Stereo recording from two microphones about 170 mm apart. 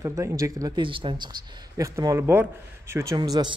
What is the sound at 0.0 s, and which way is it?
A man's voice, 20° right (ahead or behind).